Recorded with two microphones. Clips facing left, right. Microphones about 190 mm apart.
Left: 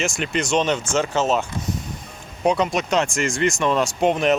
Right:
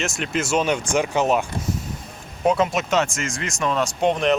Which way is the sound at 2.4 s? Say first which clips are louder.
Even; centre (ahead or behind).